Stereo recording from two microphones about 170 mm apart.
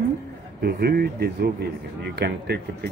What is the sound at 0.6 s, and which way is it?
Speech, 70° right (ahead or behind).